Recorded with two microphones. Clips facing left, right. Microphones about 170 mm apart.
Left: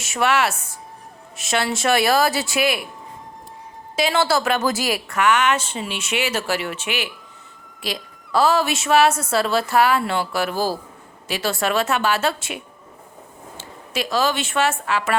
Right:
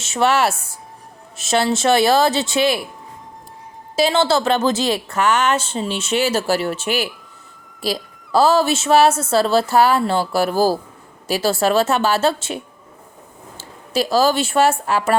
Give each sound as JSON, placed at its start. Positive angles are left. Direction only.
{"t": 0.1, "sound": "speech", "side_deg": -30}
{"t": 3.9, "sound": "speech", "side_deg": -25}
{"t": 13.9, "sound": "a woman's voice", "side_deg": -30}